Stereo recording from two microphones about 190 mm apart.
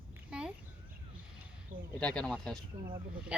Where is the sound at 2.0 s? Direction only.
5° left (ahead or behind).